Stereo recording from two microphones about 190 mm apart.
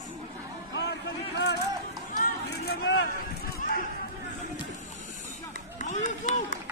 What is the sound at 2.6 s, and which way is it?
Vehicle, 60° left (ahead or behind).